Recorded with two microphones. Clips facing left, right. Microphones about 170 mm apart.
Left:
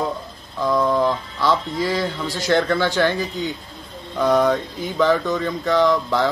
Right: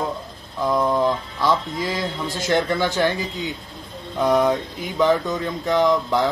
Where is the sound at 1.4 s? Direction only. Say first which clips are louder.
Left 2 dB; 20° right (ahead or behind).